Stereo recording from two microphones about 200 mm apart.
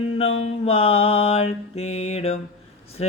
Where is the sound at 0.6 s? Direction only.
30° left (ahead or behind).